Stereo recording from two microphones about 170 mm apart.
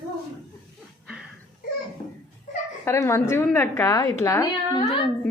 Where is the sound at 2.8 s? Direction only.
15° left (ahead or behind).